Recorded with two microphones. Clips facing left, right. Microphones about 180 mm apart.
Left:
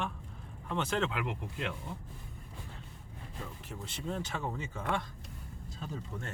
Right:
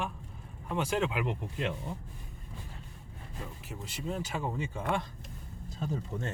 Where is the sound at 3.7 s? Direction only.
10° right (ahead or behind).